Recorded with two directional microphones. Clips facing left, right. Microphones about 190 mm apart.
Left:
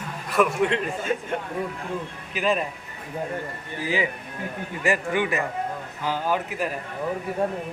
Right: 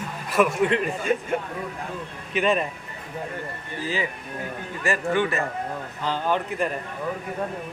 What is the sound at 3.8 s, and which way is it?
Speech, 15° left (ahead or behind).